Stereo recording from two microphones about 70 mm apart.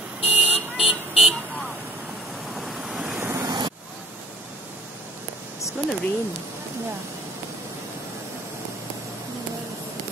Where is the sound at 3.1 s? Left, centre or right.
Right.